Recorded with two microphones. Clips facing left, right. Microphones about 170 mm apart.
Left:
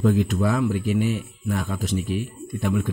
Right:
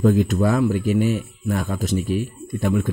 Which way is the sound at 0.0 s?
45° right (ahead or behind).